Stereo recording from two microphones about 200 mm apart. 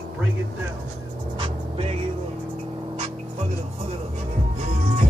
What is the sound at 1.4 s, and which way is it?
Vehicle, 30° right (ahead or behind).